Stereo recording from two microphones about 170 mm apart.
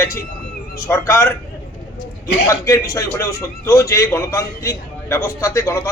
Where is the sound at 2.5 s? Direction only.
20° left (ahead or behind).